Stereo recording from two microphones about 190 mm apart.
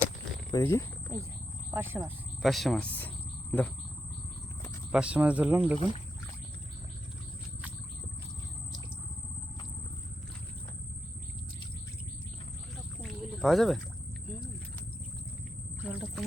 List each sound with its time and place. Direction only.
0.5 s cricket: 15° left (ahead or behind)
1.7 s speech: 10° right (ahead or behind)
2.4 s speech: centre (ahead or behind)
3.5 s cricket: 5° left (ahead or behind)
4.9 s speech: 5° right (ahead or behind)
5.7 s speech: 30° left (ahead or behind)
13.0 s a sound: centre (ahead or behind)
15.8 s a sound: 5° right (ahead or behind)